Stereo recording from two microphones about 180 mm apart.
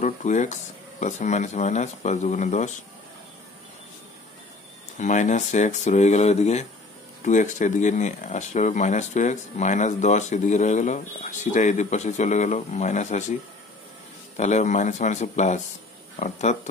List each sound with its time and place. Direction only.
0.0 s speech: 40° left (ahead or behind)
4.9 s speech: 45° left (ahead or behind)
14.3 s speech: 40° left (ahead or behind)